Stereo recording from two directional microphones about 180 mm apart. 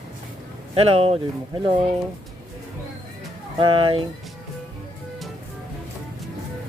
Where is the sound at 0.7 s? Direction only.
35° right (ahead or behind).